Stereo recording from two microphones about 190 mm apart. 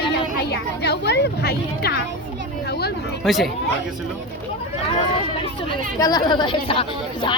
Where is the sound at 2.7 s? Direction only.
60° left (ahead or behind).